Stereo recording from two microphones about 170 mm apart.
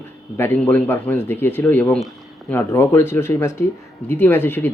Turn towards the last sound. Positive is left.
turn(degrees=10)  # may be behind; listen again after turning